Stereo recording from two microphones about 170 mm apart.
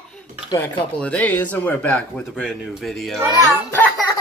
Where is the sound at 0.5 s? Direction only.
20° left (ahead or behind).